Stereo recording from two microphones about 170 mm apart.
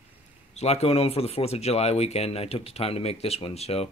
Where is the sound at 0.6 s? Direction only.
40° left (ahead or behind).